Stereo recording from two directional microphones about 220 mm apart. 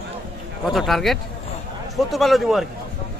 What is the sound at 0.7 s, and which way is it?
Speech, centre (ahead or behind).